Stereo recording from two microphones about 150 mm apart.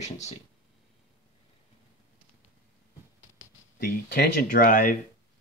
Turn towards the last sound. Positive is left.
turn(degrees=65)  # may be behind; listen again after turning